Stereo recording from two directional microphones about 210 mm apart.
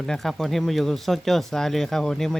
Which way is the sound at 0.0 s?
Centre (ahead or behind).